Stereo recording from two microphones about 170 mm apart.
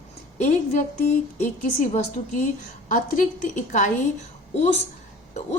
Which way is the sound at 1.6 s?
45° left (ahead or behind).